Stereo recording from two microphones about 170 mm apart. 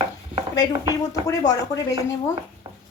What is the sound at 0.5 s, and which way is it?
Speech, 20° left (ahead or behind).